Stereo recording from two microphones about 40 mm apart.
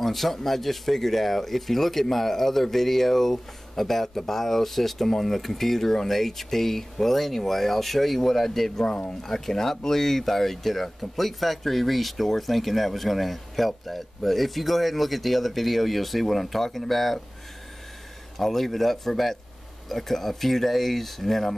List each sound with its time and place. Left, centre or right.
0.0 s speech: centre
8.8 s speech: left
9.2 s speech: centre
18.4 s speech: centre